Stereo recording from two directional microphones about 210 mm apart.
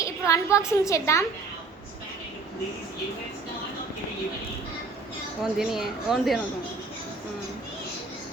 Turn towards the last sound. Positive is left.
turn(degrees=0)  # may be behind; listen again after turning